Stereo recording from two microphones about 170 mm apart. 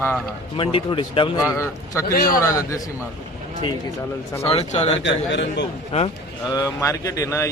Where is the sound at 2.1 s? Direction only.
60° left (ahead or behind).